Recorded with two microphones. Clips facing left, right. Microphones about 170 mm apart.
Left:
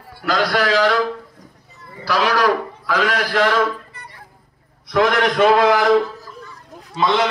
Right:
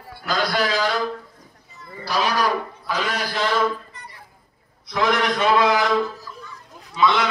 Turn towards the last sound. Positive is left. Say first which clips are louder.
# left 1 dB
turn(degrees=40)  # may be behind; listen again after turning